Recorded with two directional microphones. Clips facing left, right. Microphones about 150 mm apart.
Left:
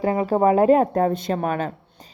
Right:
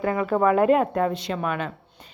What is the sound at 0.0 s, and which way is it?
A woman's voice, 30° left (ahead or behind).